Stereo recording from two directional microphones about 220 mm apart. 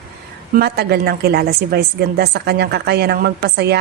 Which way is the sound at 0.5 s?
45° right (ahead or behind).